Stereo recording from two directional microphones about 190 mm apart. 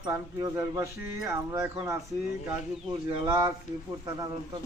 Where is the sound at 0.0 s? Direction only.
15° right (ahead or behind).